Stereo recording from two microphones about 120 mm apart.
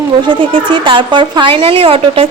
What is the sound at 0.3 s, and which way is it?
A woman's voice, 45° right (ahead or behind).